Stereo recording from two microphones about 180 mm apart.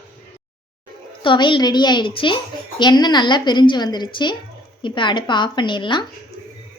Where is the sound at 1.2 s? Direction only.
25° left (ahead or behind).